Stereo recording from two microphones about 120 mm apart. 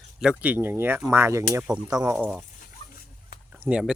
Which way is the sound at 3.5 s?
15° right (ahead or behind).